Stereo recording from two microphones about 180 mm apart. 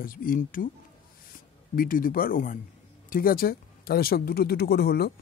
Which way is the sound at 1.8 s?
50° left (ahead or behind).